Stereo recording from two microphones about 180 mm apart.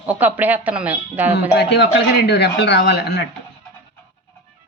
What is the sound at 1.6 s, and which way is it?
Speech, 70° left (ahead or behind).